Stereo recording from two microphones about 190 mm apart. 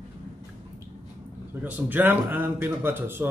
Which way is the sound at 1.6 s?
10° right (ahead or behind).